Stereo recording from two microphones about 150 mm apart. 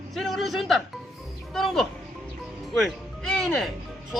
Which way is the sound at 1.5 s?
Centre (ahead or behind).